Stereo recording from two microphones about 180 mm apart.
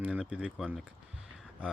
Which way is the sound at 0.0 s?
5° right (ahead or behind).